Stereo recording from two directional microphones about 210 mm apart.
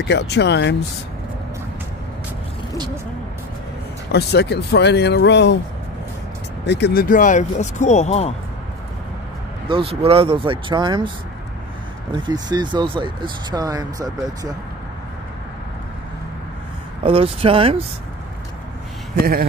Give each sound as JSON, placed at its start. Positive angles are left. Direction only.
{"t": 0.1, "sound": "speech", "side_deg": 50}
{"t": 4.1, "sound": "speech", "side_deg": 50}
{"t": 6.6, "sound": "speech", "side_deg": 55}
{"t": 9.7, "sound": "speech", "side_deg": -25}
{"t": 12.1, "sound": "speech", "side_deg": -20}
{"t": 17.0, "sound": "speech", "side_deg": -25}